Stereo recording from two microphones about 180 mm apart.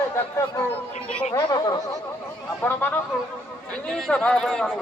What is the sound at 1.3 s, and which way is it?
A woman's voice, 20° left (ahead or behind).